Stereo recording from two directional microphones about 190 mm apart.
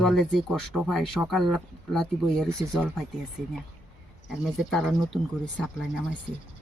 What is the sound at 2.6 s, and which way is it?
Speech, 10° right (ahead or behind).